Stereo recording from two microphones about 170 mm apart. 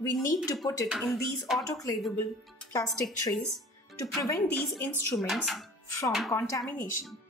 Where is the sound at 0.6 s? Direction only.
20° left (ahead or behind).